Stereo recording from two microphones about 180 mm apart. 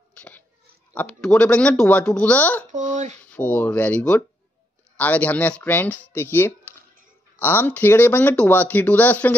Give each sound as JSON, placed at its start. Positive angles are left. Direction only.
{"t": 0.1, "sound": "a sound", "side_deg": 10}
{"t": 0.9, "sound": "speech", "side_deg": 5}
{"t": 2.7, "sound": "speech", "side_deg": -40}
{"t": 3.3, "sound": "speech", "side_deg": 10}